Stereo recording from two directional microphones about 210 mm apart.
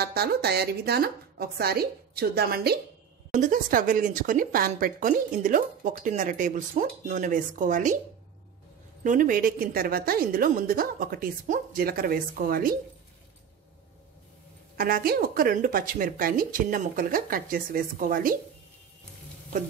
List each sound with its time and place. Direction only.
0.0 s a woman's voice: 50° right (ahead or behind)
9.0 s a woman's voice: 40° right (ahead or behind)
14.8 s a woman's voice: 45° right (ahead or behind)